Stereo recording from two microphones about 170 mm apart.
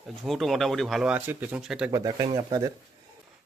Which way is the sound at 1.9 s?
20° right (ahead or behind).